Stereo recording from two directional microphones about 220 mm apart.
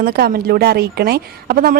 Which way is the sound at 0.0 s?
45° right (ahead or behind).